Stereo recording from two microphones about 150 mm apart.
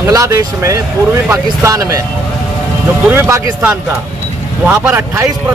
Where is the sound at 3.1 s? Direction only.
15° right (ahead or behind).